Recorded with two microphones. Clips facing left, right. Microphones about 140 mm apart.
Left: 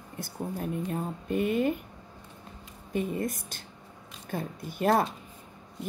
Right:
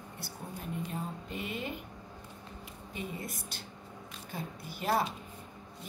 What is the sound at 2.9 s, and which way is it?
Speech, 50° left (ahead or behind).